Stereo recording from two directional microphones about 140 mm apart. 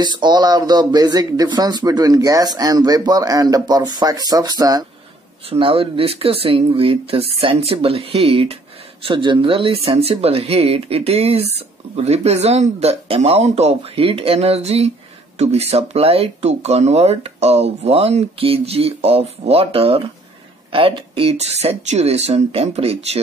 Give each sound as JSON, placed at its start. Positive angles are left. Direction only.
{"t": 0.0, "sound": "speech", "side_deg": -30}
{"t": 5.5, "sound": "speech", "side_deg": -40}